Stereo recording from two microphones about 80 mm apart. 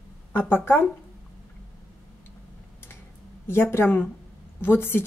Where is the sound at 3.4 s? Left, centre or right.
Left.